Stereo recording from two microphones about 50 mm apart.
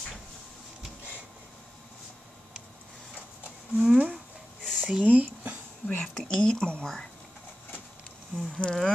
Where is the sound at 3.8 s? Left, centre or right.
Right.